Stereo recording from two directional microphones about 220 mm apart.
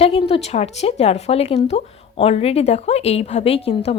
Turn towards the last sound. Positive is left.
turn(degrees=25)  # may be behind; listen again after turning